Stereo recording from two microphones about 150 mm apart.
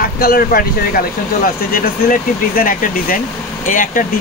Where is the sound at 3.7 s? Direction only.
60° left (ahead or behind).